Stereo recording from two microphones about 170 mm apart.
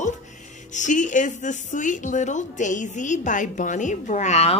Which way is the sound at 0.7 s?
45° left (ahead or behind).